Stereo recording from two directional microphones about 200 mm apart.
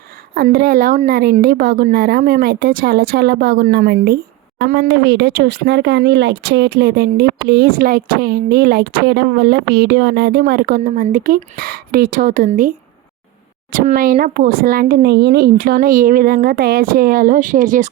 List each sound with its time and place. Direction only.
0.3 s speech: 50° right (ahead or behind)
13.7 s speech: 45° right (ahead or behind)